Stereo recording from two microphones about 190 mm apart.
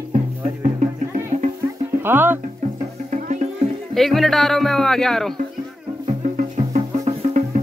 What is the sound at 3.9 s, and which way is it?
Speech, centre (ahead or behind).